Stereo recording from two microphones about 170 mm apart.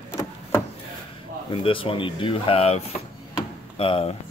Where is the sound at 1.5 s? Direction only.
30° left (ahead or behind).